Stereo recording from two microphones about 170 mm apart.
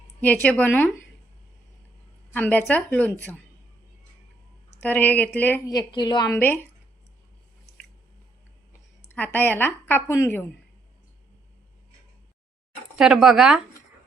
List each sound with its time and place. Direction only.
0.2 s a woman's voice: 10° left (ahead or behind)
2.3 s a woman's voice: 10° left (ahead or behind)
4.8 s a woman's voice: 10° left (ahead or behind)
5.6 s a woman's voice: 25° left (ahead or behind)
9.0 s a woman's voice: 10° left (ahead or behind)
13.0 s speech: 5° right (ahead or behind)